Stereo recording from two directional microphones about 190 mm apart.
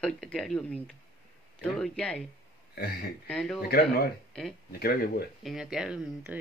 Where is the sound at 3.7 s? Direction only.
55° left (ahead or behind).